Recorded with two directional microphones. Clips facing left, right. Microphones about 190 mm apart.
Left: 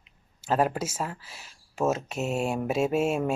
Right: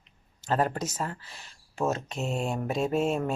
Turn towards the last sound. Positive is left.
turn(degrees=10)  # may be behind; listen again after turning